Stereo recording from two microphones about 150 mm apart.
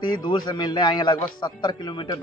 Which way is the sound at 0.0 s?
30° left (ahead or behind).